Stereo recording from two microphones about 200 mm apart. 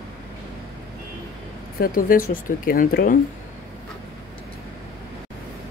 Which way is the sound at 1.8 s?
45° left (ahead or behind).